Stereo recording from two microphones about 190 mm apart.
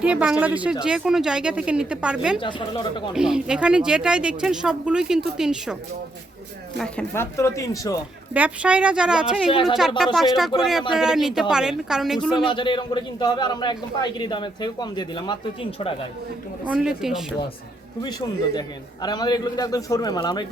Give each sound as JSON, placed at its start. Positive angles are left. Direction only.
{"t": 0.0, "sound": "speech", "side_deg": -5}
{"t": 2.4, "sound": "a man's voice", "side_deg": 25}
{"t": 3.2, "sound": "speech", "side_deg": -5}
{"t": 6.7, "sound": "speech", "side_deg": 5}
{"t": 8.3, "sound": "speech", "side_deg": -5}
{"t": 9.5, "sound": "a man's voice", "side_deg": 25}
{"t": 10.2, "sound": "speech", "side_deg": 0}
{"t": 12.5, "sound": "a man's voice", "side_deg": 25}
{"t": 16.6, "sound": "speech", "side_deg": -5}
{"t": 19.0, "sound": "a man's voice", "side_deg": 20}